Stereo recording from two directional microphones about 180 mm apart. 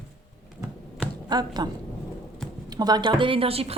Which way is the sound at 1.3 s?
25° right (ahead or behind).